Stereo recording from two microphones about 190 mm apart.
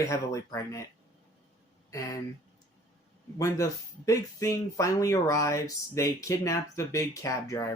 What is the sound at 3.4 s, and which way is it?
Speech, 15° left (ahead or behind).